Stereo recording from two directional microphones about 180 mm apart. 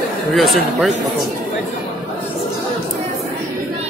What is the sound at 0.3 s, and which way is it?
Speech, centre (ahead or behind).